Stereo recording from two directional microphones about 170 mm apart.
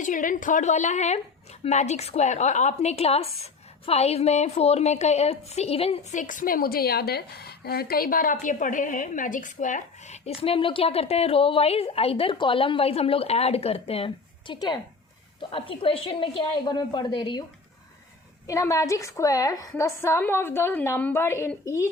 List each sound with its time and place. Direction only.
0.0 s a woman's voice: 50° left (ahead or behind); by 17.4 s 25° left (ahead or behind)
18.4 s a woman's voice: 20° left (ahead or behind)